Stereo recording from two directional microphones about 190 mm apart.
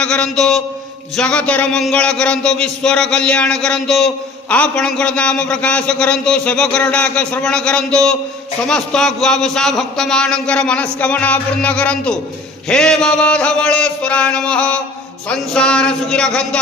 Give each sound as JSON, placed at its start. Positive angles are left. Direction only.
{"t": 0.0, "sound": "a man's voice", "side_deg": 5}
{"t": 11.0, "sound": "music", "side_deg": 5}
{"t": 12.6, "sound": "a man's voice", "side_deg": 5}